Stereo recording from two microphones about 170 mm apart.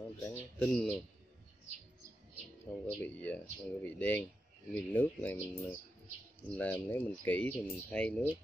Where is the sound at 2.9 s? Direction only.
10° left (ahead or behind).